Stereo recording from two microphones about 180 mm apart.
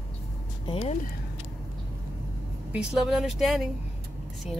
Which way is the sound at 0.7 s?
35° left (ahead or behind).